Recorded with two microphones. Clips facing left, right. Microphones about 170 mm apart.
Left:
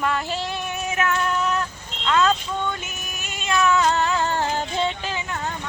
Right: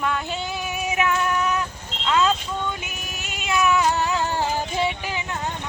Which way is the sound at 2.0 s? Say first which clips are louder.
Left 1 dB; 10° right (ahead or behind).